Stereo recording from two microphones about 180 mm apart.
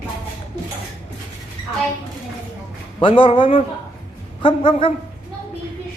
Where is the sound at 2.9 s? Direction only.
30° left (ahead or behind).